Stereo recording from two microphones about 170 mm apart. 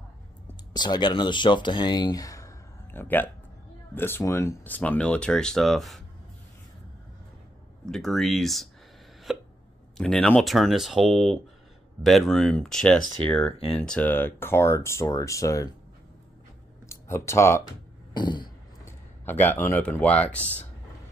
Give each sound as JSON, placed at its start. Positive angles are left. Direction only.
{"t": 0.7, "sound": "speech", "side_deg": 25}
{"t": 7.9, "sound": "speech", "side_deg": 0}
{"t": 9.3, "sound": "hiccup", "side_deg": -5}
{"t": 9.9, "sound": "speech", "side_deg": 5}
{"t": 16.9, "sound": "speech", "side_deg": 15}
{"t": 18.9, "sound": "speech", "side_deg": 10}